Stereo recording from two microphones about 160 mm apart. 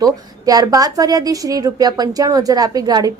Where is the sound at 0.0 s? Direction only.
25° right (ahead or behind).